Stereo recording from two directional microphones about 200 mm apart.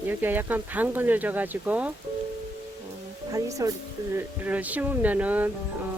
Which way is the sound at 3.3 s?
15° right (ahead or behind).